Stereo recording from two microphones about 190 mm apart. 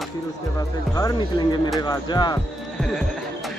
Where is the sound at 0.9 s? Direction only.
20° left (ahead or behind).